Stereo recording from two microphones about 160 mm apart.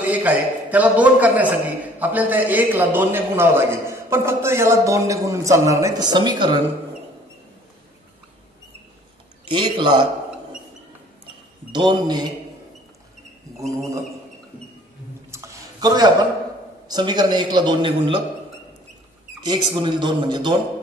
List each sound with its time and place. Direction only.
0.0 s a man's voice: 10° right (ahead or behind); by 6.6 s 30° right (ahead or behind)
9.5 s a man's voice: 30° right (ahead or behind)
11.7 s a man's voice: 25° right (ahead or behind)
15.3 s a sound: 20° right (ahead or behind)
16.8 s a man's voice: 25° right (ahead or behind)
19.4 s a man's voice: 30° right (ahead or behind)